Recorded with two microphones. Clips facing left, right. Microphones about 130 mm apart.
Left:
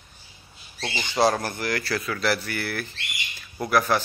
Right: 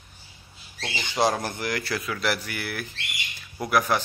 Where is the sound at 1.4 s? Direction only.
15° right (ahead or behind).